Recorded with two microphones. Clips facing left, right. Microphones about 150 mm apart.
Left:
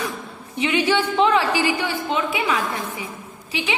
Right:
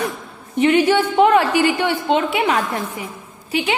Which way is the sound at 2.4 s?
45° right (ahead or behind).